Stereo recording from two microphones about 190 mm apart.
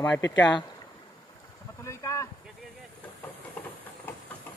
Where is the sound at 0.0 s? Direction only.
10° left (ahead or behind).